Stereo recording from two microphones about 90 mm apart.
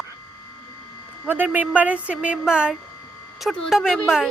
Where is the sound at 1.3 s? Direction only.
20° right (ahead or behind); by 4.3 s 5° right (ahead or behind).